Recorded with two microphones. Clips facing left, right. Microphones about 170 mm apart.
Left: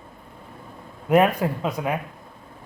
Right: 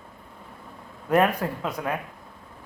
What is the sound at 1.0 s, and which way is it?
Speech, 15° left (ahead or behind).